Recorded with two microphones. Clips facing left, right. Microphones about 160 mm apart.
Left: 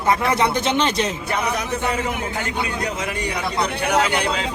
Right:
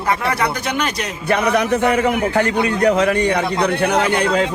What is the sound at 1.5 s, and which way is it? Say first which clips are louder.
A man's voice: right 8 dB; 70° right (ahead or behind).